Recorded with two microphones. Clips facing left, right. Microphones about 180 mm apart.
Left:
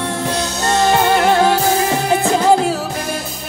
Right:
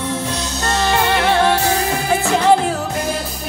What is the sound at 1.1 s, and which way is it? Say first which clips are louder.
Music: left 2 dB; 40° left (ahead or behind).